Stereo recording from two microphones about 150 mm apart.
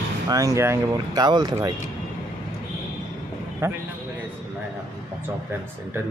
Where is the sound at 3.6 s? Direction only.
20° right (ahead or behind).